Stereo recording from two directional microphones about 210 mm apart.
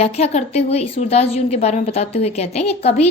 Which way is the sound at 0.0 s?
30° left (ahead or behind).